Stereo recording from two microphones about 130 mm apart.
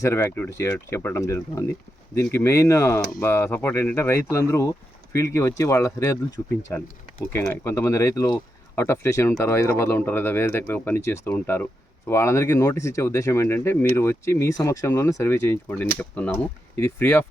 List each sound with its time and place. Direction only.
0.0 s speech: 20° left (ahead or behind)